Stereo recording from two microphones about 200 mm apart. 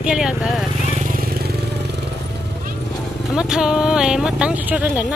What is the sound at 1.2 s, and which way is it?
Vehicle, 50° right (ahead or behind).